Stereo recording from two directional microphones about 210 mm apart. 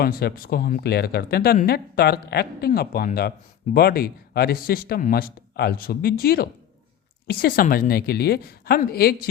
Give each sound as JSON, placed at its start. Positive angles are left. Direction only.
{"t": 0.0, "sound": "speech", "side_deg": 45}